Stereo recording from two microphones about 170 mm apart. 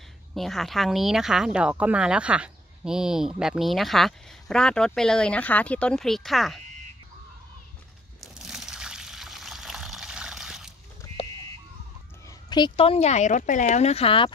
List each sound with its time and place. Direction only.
0.3 s speech: centre (ahead or behind)
8.4 s water: 5° right (ahead or behind)
12.3 s speech: 25° left (ahead or behind)